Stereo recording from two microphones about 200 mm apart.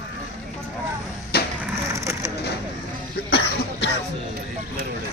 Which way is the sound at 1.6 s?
15° right (ahead or behind).